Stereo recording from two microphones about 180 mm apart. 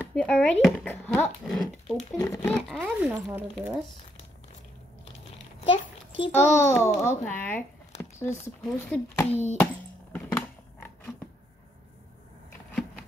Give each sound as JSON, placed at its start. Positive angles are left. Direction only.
{"t": 0.0, "sound": "speech", "side_deg": 5}
{"t": 2.1, "sound": "speech", "side_deg": 15}
{"t": 2.8, "sound": "speech", "side_deg": -10}
{"t": 5.6, "sound": "a sound", "side_deg": 30}
{"t": 6.5, "sound": "speech", "side_deg": 15}
{"t": 10.1, "sound": "a sound", "side_deg": 10}